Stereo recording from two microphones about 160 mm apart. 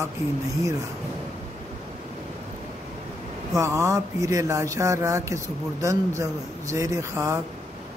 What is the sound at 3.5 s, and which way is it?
Speech, 20° right (ahead or behind).